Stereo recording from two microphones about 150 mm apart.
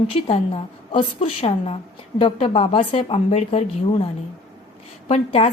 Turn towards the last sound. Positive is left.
turn(degrees=45)  # may be behind; listen again after turning